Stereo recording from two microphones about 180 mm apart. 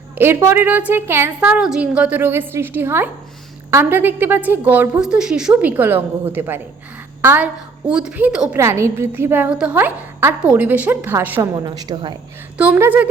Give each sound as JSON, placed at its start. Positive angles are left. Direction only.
{"t": 0.2, "sound": "a woman's voice", "side_deg": -15}
{"t": 11.5, "sound": "a woman's voice", "side_deg": -20}
{"t": 12.5, "sound": "a woman's voice", "side_deg": -10}